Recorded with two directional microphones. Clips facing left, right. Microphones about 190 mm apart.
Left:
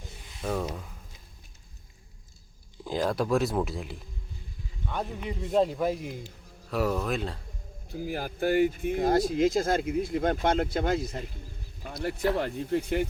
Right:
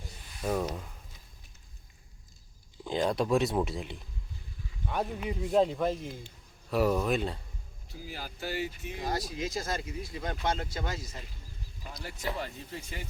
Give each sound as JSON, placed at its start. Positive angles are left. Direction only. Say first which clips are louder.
{"t": 0.6, "sound": "speech", "louder": "even", "side_deg": 0}
{"t": 2.8, "sound": "speech", "louder": "left 1 dB", "side_deg": 0}
{"t": 6.2, "sound": "speech", "louder": "left 5 dB", "side_deg": 0}
{"t": 7.9, "sound": "speech", "louder": "left 10 dB", "side_deg": 55}